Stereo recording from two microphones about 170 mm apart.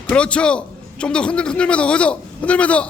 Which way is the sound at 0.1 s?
5° left (ahead or behind).